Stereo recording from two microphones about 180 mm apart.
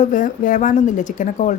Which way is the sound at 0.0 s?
45° left (ahead or behind).